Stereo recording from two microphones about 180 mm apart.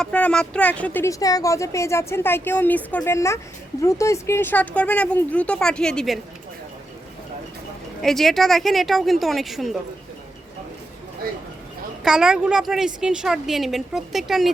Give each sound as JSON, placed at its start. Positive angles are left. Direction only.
{"t": 0.0, "sound": "speech", "side_deg": 5}
{"t": 8.0, "sound": "a woman's voice", "side_deg": 0}
{"t": 12.0, "sound": "a woman's voice", "side_deg": -5}